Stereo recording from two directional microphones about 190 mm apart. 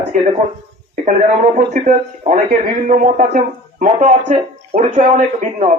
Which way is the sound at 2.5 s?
50° right (ahead or behind).